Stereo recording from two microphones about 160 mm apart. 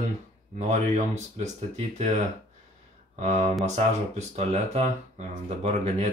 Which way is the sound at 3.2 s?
45° right (ahead or behind).